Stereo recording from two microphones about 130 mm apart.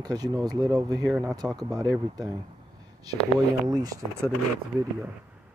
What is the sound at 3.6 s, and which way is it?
Speech, 25° right (ahead or behind).